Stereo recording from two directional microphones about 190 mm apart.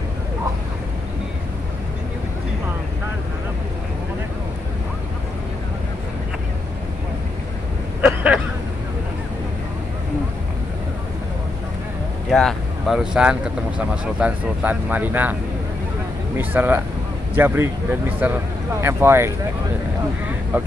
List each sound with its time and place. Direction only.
8.0 s a sound: 10° right (ahead or behind)
12.3 s speech: centre (ahead or behind)
16.3 s speech: 10° right (ahead or behind)
20.5 s speech: 10° right (ahead or behind)